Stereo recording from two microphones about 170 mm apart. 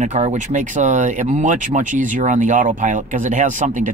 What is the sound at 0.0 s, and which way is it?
Speech, 45° right (ahead or behind).